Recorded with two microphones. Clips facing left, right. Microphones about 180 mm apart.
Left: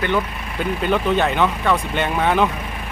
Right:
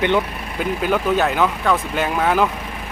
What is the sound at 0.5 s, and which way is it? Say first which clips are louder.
Speech: even; 5° right (ahead or behind).